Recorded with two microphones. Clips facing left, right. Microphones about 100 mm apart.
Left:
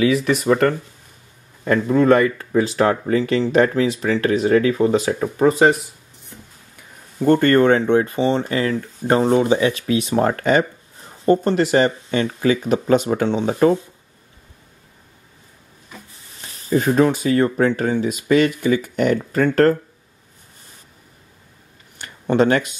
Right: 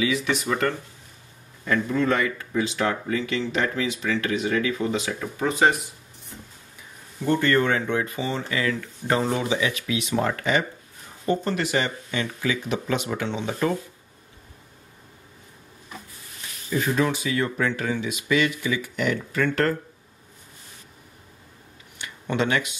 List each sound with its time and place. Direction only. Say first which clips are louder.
0.0 s speech: left 7 dB; 45° left (ahead or behind)
7.2 s speech: left 8 dB; 45° left (ahead or behind)
16.3 s speech: left 7 dB; 35° left (ahead or behind)
21.9 s a sound: left 9 dB; 40° left (ahead or behind)